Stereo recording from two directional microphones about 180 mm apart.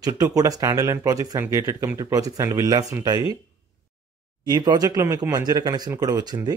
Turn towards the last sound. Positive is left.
turn(degrees=-20)  # may be behind; listen again after turning